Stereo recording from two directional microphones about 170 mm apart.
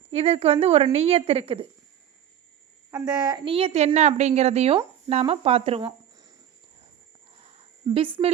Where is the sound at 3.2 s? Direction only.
25° right (ahead or behind).